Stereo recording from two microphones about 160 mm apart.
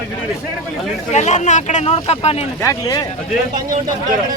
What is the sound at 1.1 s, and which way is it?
Speech, 45° left (ahead or behind).